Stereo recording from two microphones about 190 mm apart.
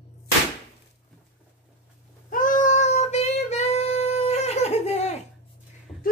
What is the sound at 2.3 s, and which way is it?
Cat, 45° left (ahead or behind).